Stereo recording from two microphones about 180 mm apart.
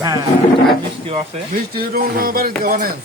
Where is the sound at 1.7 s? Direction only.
55° right (ahead or behind).